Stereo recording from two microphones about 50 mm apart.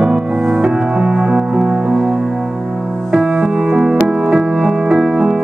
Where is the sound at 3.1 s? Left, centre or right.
Centre.